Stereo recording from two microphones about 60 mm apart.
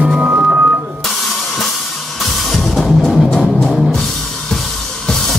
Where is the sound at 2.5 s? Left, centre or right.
Centre.